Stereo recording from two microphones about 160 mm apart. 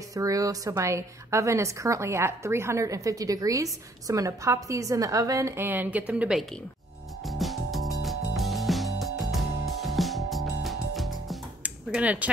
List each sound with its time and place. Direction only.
0.1 s a woman's voice: 20° right (ahead or behind)
7.2 s music: centre (ahead or behind)